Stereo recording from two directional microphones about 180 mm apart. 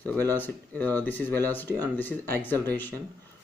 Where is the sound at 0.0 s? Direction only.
10° left (ahead or behind).